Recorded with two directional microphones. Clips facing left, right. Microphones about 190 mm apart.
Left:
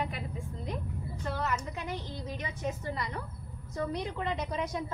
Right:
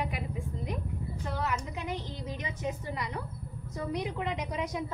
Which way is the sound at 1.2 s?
15° right (ahead or behind).